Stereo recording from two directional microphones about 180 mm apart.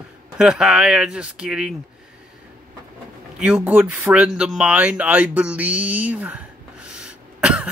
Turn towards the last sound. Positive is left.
turn(degrees=-5)  # may be behind; listen again after turning